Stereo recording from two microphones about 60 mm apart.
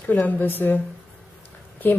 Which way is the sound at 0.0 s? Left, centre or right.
Left.